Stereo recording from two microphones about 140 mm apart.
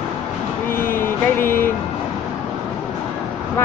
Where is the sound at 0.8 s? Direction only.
15° left (ahead or behind).